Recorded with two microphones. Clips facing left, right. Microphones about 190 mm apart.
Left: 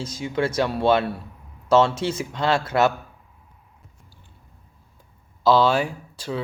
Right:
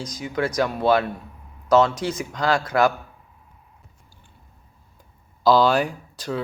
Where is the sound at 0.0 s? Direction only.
30° left (ahead or behind).